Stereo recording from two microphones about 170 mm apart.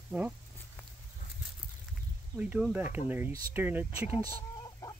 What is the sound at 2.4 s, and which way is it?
Speech, 5° right (ahead or behind).